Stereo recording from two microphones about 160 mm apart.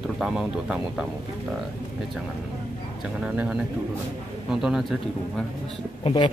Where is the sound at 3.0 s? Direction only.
5° right (ahead or behind).